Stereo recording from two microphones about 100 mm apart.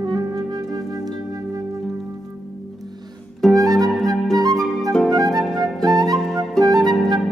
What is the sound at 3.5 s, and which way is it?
Music, 35° right (ahead or behind).